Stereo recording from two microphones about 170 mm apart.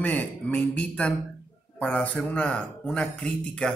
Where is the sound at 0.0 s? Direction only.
10° left (ahead or behind).